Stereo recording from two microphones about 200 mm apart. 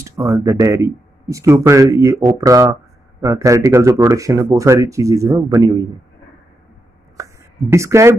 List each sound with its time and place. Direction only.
0.0 s speech: 15° right (ahead or behind)
7.2 s a sound: 15° right (ahead or behind)
7.7 s speech: 15° right (ahead or behind)